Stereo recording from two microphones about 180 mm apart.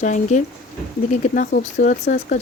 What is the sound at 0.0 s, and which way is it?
Speech, 40° left (ahead or behind).